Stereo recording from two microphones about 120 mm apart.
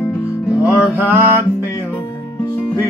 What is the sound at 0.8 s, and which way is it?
Music, 20° right (ahead or behind).